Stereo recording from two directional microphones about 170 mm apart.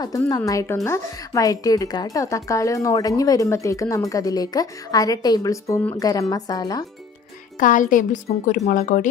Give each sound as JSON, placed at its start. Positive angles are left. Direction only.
{"t": 0.0, "sound": "a woman's voice", "side_deg": 20}
{"t": 7.6, "sound": "a woman's voice", "side_deg": 50}